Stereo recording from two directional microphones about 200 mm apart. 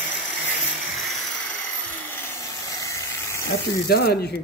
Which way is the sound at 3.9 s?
50° left (ahead or behind).